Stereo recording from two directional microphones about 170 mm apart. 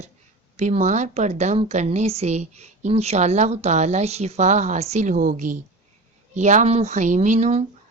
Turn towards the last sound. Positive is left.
turn(degrees=-40)  # may be behind; listen again after turning